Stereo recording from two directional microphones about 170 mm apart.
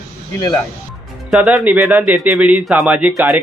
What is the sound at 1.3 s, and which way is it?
Speech, 5° right (ahead or behind).